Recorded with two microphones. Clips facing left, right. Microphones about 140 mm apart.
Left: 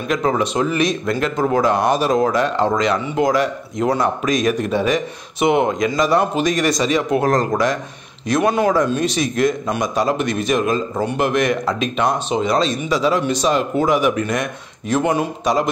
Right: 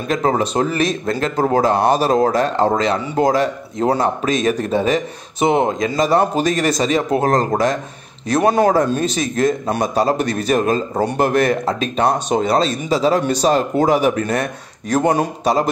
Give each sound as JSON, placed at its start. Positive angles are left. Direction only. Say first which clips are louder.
{"t": 0.1, "sound": "a man's voice", "louder": "right 1 dB", "side_deg": -35}